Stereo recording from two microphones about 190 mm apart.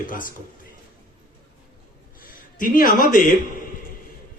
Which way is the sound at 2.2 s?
45° left (ahead or behind).